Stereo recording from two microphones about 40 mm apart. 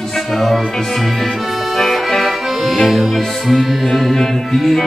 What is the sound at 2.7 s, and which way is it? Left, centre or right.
Music, centre.